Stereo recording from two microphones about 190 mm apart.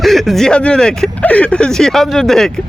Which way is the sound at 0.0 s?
Centre (ahead or behind).